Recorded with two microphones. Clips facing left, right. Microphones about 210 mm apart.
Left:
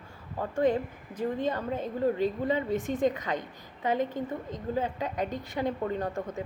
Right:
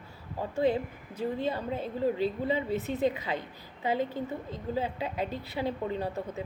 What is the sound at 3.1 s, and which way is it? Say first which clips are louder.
A woman's voice: left 1 dB; 10° right (ahead or behind).